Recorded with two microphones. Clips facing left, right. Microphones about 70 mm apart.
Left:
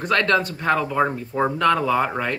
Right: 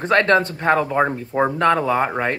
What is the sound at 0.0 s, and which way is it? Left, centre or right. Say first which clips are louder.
Speech: right 4 dB; right.